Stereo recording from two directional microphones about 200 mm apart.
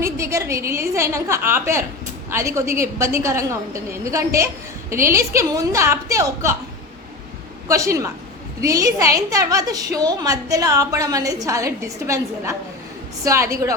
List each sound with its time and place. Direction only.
0.0 s a woman's voice: 15° right (ahead or behind)
7.7 s a woman's voice: 15° right (ahead or behind)